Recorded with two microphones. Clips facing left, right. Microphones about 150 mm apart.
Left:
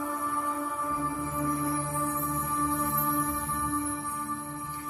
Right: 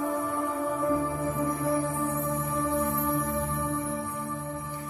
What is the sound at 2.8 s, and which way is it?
Music, 40° right (ahead or behind).